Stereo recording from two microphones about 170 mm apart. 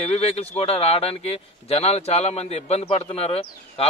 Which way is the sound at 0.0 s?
35° left (ahead or behind).